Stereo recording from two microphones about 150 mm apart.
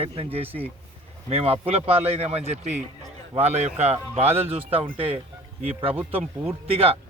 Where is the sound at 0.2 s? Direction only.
40° right (ahead or behind).